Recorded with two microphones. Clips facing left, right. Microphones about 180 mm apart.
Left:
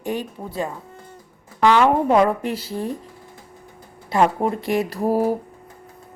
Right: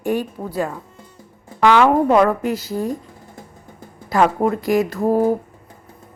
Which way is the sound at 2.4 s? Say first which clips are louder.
Right 4 dB; 30° left (ahead or behind).